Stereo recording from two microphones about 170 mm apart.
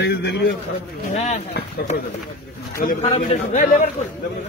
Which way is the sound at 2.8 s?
40° left (ahead or behind).